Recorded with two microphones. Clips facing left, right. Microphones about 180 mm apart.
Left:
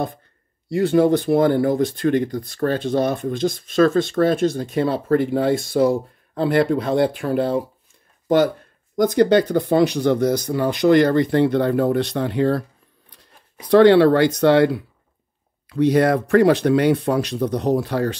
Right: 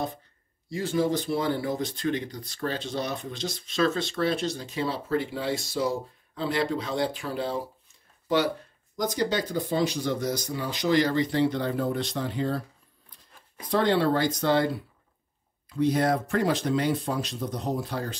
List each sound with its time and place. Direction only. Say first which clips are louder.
0.7 s speech: left 10 dB; 65° left (ahead or behind)
8.9 s speech: left 12 dB; 60° left (ahead or behind)